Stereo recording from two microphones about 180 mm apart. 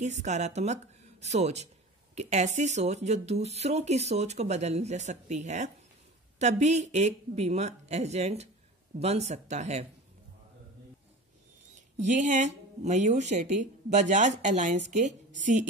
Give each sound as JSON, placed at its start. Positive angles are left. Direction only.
{"t": 0.0, "sound": "speech", "side_deg": -40}
{"t": 12.0, "sound": "speech", "side_deg": -40}